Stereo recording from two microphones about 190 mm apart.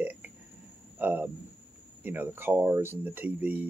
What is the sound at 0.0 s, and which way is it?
Burping, 10° right (ahead or behind).